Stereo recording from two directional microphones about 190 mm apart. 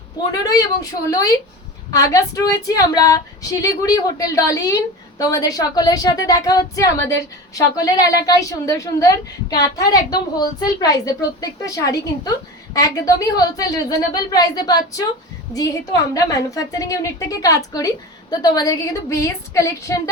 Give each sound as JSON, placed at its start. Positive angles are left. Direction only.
{"t": 0.3, "sound": "a woman's voice", "side_deg": 20}